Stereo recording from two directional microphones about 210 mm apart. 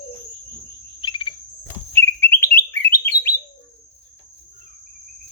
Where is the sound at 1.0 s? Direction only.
25° left (ahead or behind).